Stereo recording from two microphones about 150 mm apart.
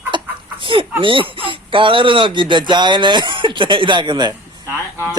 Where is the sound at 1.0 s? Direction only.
35° right (ahead or behind).